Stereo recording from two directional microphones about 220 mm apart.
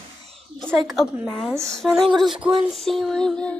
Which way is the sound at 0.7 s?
Centre (ahead or behind).